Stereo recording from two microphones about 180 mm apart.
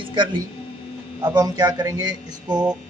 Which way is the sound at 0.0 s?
25° right (ahead or behind).